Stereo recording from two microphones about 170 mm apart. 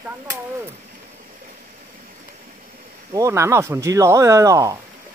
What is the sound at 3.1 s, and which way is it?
Speech, 15° right (ahead or behind).